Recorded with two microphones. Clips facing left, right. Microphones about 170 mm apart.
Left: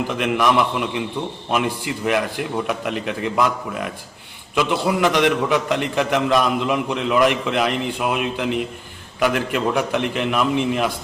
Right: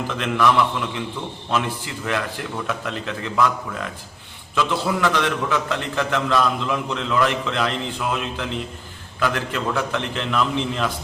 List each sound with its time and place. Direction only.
0.1 s a man's voice: 15° left (ahead or behind)